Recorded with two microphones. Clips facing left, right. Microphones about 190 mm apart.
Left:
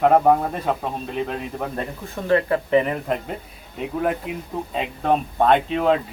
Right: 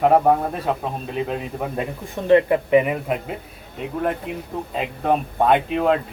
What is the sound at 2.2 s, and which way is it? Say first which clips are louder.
Speech: right 4 dB; 20° right (ahead or behind).